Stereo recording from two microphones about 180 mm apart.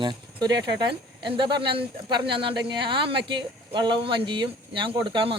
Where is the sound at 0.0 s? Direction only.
25° right (ahead or behind).